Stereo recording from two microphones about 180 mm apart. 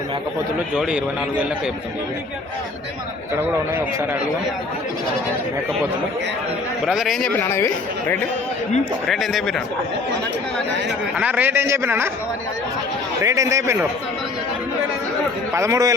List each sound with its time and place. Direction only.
0.8 s a man's voice: 5° right (ahead or behind)
6.8 s a man's voice: centre (ahead or behind)
7.3 s speech: 10° left (ahead or behind)
9.0 s a man's voice: centre (ahead or behind)
11.2 s a man's voice: 10° right (ahead or behind)
13.2 s a man's voice: 20° right (ahead or behind)
15.5 s a man's voice: 15° right (ahead or behind)